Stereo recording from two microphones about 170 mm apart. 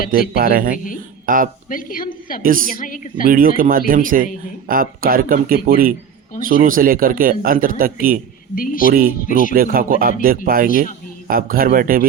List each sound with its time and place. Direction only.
0.1 s a man's voice: 60° right (ahead or behind)
1.7 s a woman's voice: 55° left (ahead or behind)
3.2 s a man's voice: 55° right (ahead or behind)
8.5 s a woman's voice: 55° left (ahead or behind)
8.9 s a man's voice: 60° right (ahead or behind)
9.2 s speech: 50° left (ahead or behind)
9.6 s a man's voice: 55° right (ahead or behind)